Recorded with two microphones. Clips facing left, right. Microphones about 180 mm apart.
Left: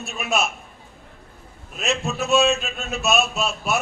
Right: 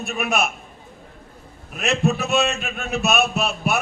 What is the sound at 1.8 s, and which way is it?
A man's voice, 60° right (ahead or behind).